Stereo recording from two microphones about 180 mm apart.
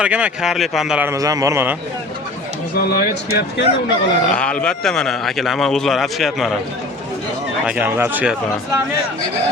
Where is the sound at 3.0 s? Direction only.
60° left (ahead or behind).